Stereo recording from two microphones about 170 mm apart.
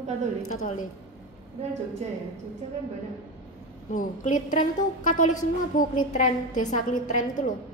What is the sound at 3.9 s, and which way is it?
A woman's voice, 50° left (ahead or behind).